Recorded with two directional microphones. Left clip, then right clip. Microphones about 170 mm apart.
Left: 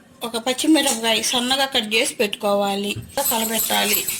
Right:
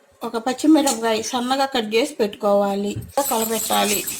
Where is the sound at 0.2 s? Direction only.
45° right (ahead or behind).